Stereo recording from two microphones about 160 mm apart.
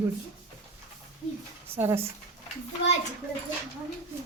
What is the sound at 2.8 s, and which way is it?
Speech, 90° left.